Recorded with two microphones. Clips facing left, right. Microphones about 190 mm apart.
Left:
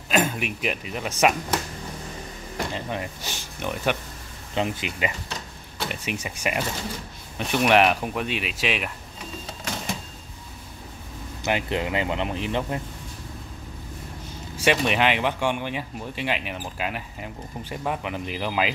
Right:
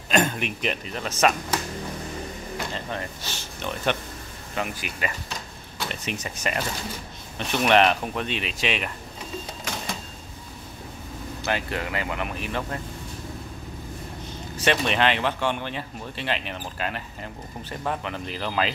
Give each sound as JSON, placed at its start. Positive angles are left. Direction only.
{"t": 0.1, "sound": "a man's voice", "side_deg": 5}
{"t": 2.7, "sound": "speech", "side_deg": 15}
{"t": 4.6, "sound": "speech", "side_deg": 25}
{"t": 11.4, "sound": "speech", "side_deg": 20}
{"t": 14.6, "sound": "speech", "side_deg": 10}